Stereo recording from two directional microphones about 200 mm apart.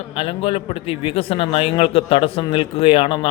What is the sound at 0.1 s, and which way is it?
A man's voice, 30° left (ahead or behind).